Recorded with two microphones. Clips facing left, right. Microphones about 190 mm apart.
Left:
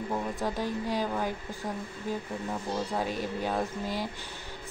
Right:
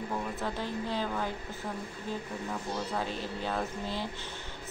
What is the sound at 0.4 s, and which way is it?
Speech, 15° left (ahead or behind).